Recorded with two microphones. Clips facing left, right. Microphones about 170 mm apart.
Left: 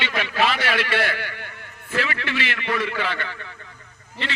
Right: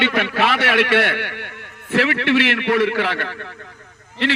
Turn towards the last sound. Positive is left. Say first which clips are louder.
# right 10 dB
turn(degrees=-70)  # may be behind; listen again after turning